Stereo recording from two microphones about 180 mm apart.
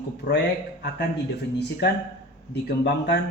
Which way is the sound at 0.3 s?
70° left (ahead or behind).